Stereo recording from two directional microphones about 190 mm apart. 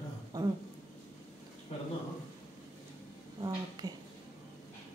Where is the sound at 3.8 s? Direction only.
20° right (ahead or behind).